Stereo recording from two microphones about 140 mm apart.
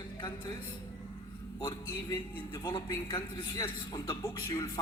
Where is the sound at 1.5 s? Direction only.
30° left (ahead or behind).